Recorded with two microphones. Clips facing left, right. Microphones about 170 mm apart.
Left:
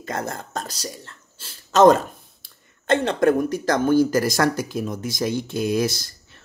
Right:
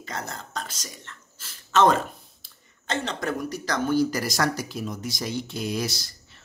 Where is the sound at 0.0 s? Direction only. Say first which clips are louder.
Left 6 dB; 50° left (ahead or behind).